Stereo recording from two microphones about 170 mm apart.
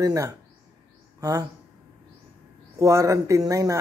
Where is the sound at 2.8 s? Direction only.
20° right (ahead or behind).